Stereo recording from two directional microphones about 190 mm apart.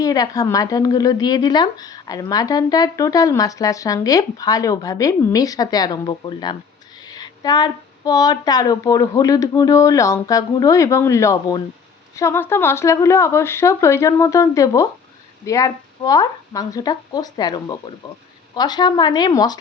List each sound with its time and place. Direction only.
0.0 s a woman's voice: 20° left (ahead or behind)